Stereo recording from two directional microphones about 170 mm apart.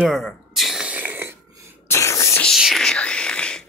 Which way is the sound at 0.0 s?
Centre (ahead or behind).